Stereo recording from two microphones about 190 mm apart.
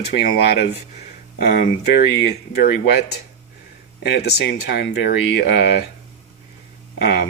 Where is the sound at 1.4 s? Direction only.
50° left (ahead or behind).